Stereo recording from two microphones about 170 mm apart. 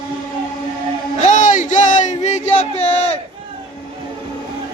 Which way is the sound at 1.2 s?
45° left (ahead or behind).